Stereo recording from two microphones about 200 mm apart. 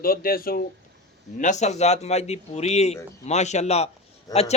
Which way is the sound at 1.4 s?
35° left (ahead or behind).